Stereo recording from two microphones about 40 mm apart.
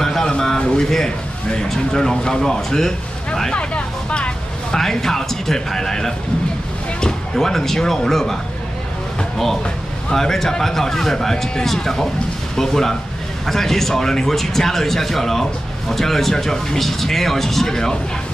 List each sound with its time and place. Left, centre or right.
0.0 s vehicle: centre
0.7 s speech: centre
3.5 s vehicle: left
4.7 s speech: centre
7.3 s speech: centre
10.1 s speech: centre